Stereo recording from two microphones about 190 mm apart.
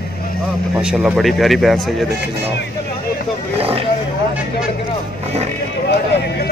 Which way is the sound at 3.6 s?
30° right (ahead or behind).